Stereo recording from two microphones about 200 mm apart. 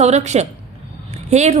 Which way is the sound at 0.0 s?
35° right (ahead or behind).